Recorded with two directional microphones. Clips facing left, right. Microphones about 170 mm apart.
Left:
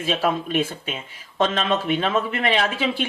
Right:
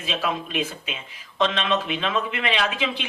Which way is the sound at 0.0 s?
40° left (ahead or behind).